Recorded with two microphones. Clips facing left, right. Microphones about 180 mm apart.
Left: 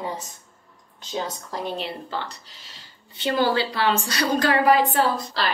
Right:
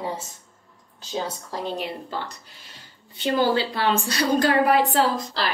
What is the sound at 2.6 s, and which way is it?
A woman's voice, 50° right (ahead or behind).